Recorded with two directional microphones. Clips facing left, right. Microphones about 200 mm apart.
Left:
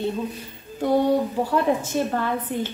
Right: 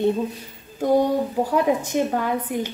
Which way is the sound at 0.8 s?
15° right (ahead or behind).